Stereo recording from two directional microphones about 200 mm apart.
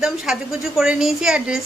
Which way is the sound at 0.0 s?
Centre (ahead or behind).